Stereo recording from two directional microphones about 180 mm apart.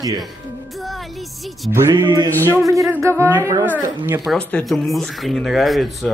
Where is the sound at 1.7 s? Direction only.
15° right (ahead or behind).